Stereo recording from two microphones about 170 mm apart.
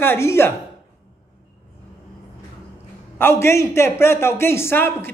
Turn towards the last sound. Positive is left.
turn(degrees=15)  # may be behind; listen again after turning